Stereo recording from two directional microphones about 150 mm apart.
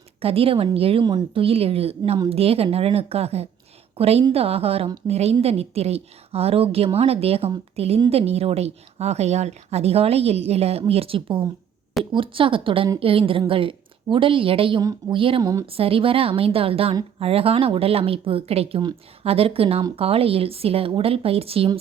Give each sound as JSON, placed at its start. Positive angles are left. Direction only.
{"t": 0.2, "sound": "a woman's voice", "side_deg": -40}